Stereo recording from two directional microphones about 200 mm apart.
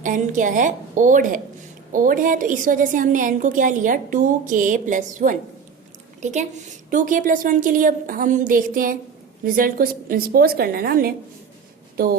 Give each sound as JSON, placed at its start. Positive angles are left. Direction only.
{"t": 0.0, "sound": "a woman's voice", "side_deg": -40}